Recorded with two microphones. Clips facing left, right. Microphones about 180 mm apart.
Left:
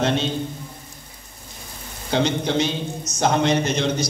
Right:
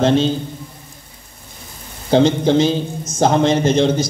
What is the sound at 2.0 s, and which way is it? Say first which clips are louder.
A man's voice: right 8 dB; 30° right (ahead or behind).